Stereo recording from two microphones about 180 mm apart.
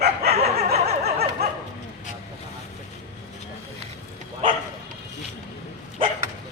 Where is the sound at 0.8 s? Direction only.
35° right (ahead or behind).